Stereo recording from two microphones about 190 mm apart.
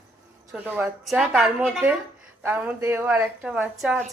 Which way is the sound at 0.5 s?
10° right (ahead or behind).